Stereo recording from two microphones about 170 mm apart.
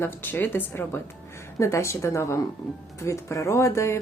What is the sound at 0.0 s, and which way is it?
Speech, 10° left (ahead or behind).